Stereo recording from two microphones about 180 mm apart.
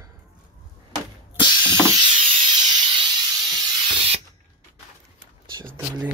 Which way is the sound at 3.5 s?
30° right (ahead or behind).